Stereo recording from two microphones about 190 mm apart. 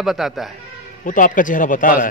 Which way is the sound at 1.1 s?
45° left (ahead or behind).